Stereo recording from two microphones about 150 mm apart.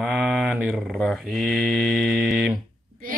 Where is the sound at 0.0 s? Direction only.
5° right (ahead or behind).